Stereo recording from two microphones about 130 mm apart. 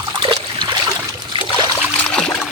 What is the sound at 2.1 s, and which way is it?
Trickle, 5° left (ahead or behind).